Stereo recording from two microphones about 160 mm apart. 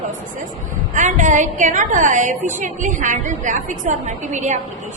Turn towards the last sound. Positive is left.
turn(degrees=-50)  # may be behind; listen again after turning